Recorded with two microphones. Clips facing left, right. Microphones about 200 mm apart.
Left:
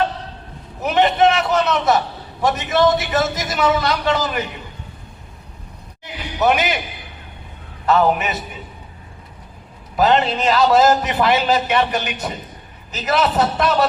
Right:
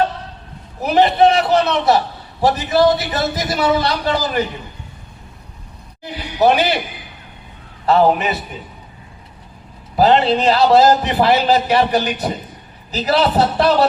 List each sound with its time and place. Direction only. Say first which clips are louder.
0.8 s a man's voice: right 3 dB; 35° right (ahead or behind)
6.4 s a man's voice: right 3 dB; 35° right (ahead or behind)
7.9 s a man's voice: right 3 dB; 35° right (ahead or behind)
9.9 s a man's voice: right 3 dB; 35° right (ahead or behind)